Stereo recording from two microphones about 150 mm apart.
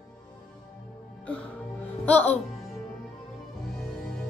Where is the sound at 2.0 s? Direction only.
10° left (ahead or behind).